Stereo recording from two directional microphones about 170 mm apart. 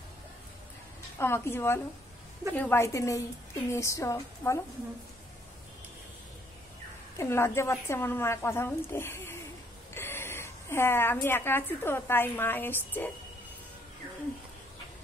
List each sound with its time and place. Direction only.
1.1 s speech: 15° left (ahead or behind)
7.2 s a woman's voice: 15° left (ahead or behind)